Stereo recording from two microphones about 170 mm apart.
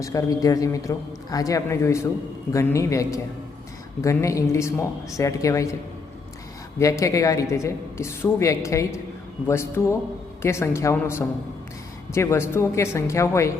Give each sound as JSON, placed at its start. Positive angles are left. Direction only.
{"t": 0.0, "sound": "a man's voice", "side_deg": 20}
{"t": 6.7, "sound": "a man's voice", "side_deg": 20}